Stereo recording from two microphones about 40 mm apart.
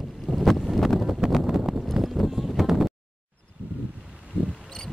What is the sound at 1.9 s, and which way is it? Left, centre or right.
Clip-clop, centre.